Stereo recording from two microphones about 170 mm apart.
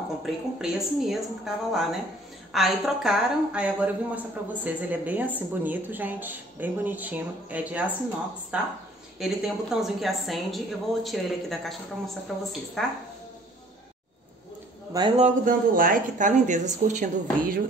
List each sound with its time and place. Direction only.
0.2 s a woman's voice: 5° right (ahead or behind)
14.9 s speech: 25° right (ahead or behind)
15.1 s speech: 50° right (ahead or behind)